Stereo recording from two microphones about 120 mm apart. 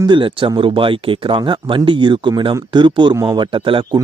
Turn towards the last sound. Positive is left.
turn(degrees=-45)  # may be behind; listen again after turning